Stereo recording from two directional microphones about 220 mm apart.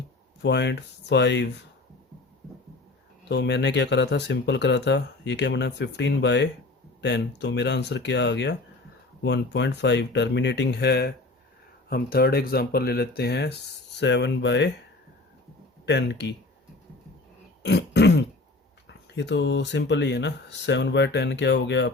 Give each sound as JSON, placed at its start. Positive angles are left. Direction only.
{"t": 0.4, "sound": "speech", "side_deg": 50}
{"t": 3.2, "sound": "speech", "side_deg": 50}
{"t": 15.9, "sound": "speech", "side_deg": 50}
{"t": 17.6, "sound": "throat clearing", "side_deg": 50}
{"t": 19.1, "sound": "speech", "side_deg": 50}